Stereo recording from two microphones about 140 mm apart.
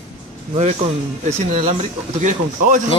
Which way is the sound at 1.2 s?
50° right (ahead or behind).